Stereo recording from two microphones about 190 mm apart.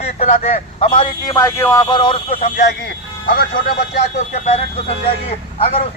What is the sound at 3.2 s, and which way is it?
Speech, 55° left (ahead or behind).